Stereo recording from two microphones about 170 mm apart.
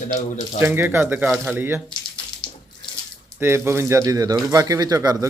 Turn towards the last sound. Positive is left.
turn(degrees=-20)  # may be behind; listen again after turning